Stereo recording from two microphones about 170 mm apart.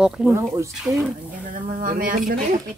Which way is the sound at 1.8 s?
55° right (ahead or behind).